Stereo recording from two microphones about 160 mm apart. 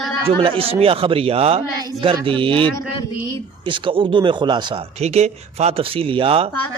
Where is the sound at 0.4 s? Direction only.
35° right (ahead or behind).